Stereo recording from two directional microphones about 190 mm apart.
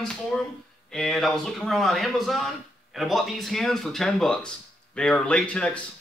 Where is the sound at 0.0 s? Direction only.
5° left (ahead or behind).